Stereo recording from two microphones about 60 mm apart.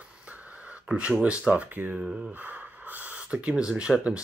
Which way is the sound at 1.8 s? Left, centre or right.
Right.